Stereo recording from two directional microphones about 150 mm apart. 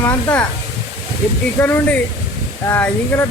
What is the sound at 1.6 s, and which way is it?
Speech, 10° left (ahead or behind).